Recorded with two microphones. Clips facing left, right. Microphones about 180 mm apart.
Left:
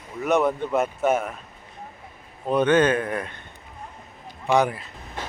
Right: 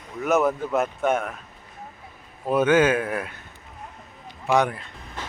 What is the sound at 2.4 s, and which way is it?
Speech, 5° right (ahead or behind).